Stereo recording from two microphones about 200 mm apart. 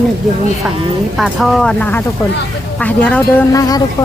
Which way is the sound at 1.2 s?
Centre (ahead or behind).